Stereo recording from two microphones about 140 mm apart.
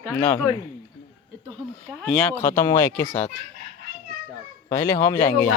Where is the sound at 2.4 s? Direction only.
25° left (ahead or behind).